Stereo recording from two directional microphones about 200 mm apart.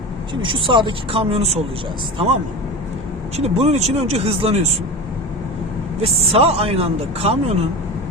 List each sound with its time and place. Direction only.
0.4 s speech: 25° right (ahead or behind)
3.3 s speech: 30° right (ahead or behind)
6.0 s speech: 30° right (ahead or behind)